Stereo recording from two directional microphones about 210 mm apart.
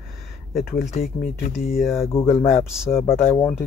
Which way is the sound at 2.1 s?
30° left (ahead or behind).